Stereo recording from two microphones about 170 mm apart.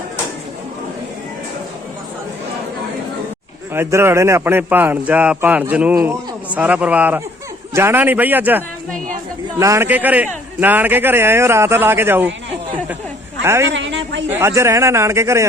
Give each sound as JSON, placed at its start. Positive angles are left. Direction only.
{"t": 3.7, "sound": "speech", "side_deg": -15}
{"t": 13.4, "sound": "a woman's voice", "side_deg": -15}
{"t": 13.7, "sound": "a woman's voice", "side_deg": -90}
{"t": 14.3, "sound": "speech", "side_deg": -15}